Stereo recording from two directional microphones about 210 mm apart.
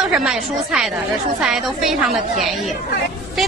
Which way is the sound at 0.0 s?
5° right (ahead or behind).